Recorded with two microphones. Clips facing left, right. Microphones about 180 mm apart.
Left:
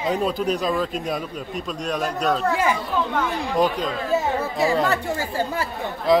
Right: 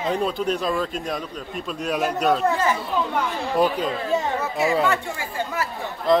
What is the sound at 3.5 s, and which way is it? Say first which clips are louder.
Speech: right 1 dB; 5° right (ahead or behind).